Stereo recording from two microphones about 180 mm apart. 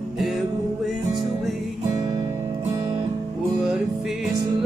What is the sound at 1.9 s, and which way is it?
Guitar, 20° right (ahead or behind).